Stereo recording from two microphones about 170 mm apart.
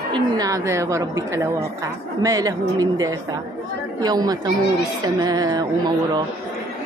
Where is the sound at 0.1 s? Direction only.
20° right (ahead or behind).